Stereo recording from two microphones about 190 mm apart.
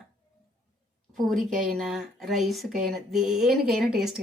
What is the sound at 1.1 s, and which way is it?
A woman's voice, centre (ahead or behind).